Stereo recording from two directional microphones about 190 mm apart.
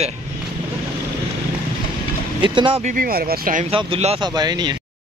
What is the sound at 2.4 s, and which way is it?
Speech, 25° right (ahead or behind).